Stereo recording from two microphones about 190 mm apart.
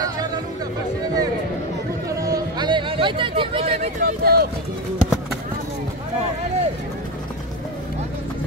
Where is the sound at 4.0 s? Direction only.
55° right (ahead or behind).